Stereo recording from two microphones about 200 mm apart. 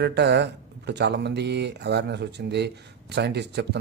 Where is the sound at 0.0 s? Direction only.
55° right (ahead or behind).